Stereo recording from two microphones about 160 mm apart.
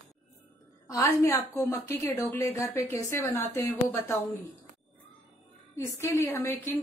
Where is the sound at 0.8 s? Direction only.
20° left (ahead or behind).